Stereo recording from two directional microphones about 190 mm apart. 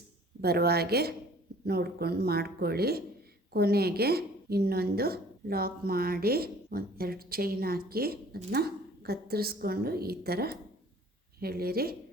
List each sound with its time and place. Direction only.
0.4 s a woman's voice: 55° right (ahead or behind)